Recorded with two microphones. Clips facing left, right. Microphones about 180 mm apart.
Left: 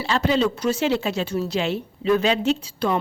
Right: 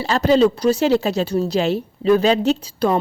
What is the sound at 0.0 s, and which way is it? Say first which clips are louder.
Speech: right 6 dB; 40° right (ahead or behind).